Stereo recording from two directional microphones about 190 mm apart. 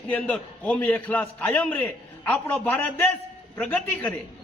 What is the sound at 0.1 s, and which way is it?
A man's voice, 5° left (ahead or behind).